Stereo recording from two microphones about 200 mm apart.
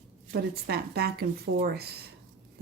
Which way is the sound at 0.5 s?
50° right (ahead or behind).